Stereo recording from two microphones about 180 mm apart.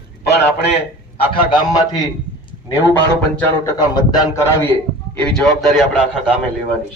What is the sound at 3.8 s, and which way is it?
Speech, 20° left (ahead or behind).